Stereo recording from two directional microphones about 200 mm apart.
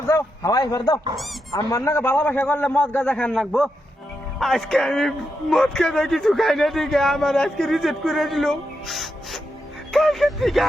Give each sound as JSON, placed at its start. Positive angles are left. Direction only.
{"t": 0.1, "sound": "a man's voice", "side_deg": 15}
{"t": 1.1, "sound": "a man's voice", "side_deg": 0}
{"t": 1.5, "sound": "a man's voice", "side_deg": 15}